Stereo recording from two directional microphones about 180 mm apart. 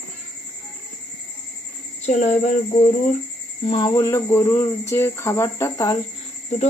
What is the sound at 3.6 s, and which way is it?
Speech, 30° left (ahead or behind).